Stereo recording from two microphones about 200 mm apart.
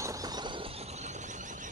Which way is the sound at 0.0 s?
15° right (ahead or behind).